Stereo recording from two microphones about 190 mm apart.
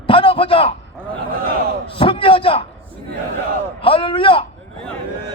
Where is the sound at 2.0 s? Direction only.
25° left (ahead or behind).